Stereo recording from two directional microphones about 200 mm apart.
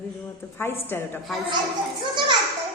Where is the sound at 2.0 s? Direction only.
25° right (ahead or behind).